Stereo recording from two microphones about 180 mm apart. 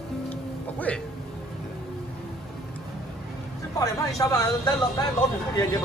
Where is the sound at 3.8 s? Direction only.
20° left (ahead or behind).